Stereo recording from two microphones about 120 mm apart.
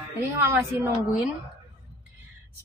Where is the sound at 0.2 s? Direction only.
20° right (ahead or behind).